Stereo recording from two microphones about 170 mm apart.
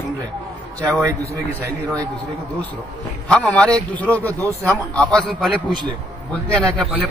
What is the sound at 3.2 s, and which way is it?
A man's voice, 5° left (ahead or behind).